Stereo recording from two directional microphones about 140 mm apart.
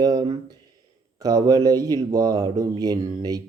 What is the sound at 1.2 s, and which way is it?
Mantra, 25° right (ahead or behind).